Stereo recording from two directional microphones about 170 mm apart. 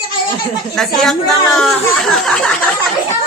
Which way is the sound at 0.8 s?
5° left (ahead or behind).